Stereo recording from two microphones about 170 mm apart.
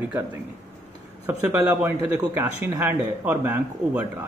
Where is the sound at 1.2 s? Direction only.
10° right (ahead or behind).